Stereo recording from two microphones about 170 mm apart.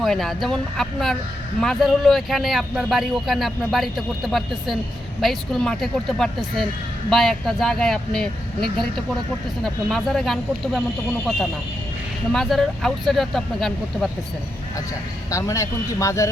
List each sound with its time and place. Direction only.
0.0 s speech: centre (ahead or behind)
12.3 s speech: centre (ahead or behind)
15.3 s speech: 20° left (ahead or behind)